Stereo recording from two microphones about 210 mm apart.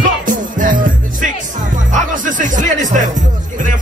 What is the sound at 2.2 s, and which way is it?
Speech, 40° right (ahead or behind).